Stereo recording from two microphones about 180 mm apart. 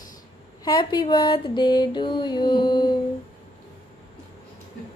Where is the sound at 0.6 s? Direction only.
25° left (ahead or behind).